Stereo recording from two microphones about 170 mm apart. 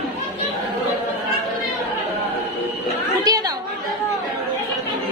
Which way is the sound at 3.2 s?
20° right (ahead or behind).